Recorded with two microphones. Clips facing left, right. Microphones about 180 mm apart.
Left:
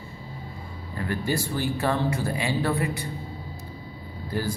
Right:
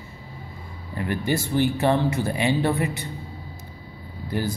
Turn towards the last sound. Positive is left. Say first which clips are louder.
# right 2 dB
turn(degrees=-20)  # may be behind; listen again after turning